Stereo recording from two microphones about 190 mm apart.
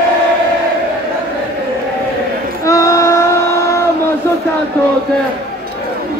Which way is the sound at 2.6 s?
15° left (ahead or behind).